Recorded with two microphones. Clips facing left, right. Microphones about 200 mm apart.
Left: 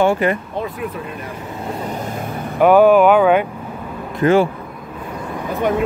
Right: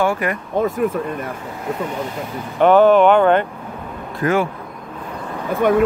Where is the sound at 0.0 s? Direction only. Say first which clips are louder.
Left 4 dB; 25° left (ahead or behind).